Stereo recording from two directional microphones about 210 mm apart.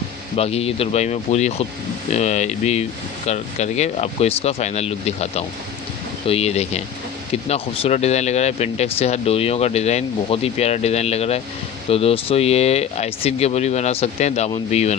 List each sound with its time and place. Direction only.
0.4 s speech: 30° left (ahead or behind)